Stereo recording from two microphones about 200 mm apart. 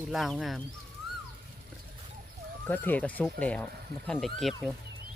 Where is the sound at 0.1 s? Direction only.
Centre (ahead or behind).